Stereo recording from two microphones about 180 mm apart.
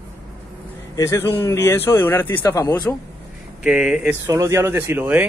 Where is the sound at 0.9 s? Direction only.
15° left (ahead or behind).